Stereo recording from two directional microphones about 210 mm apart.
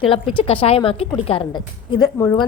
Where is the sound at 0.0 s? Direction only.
25° left (ahead or behind).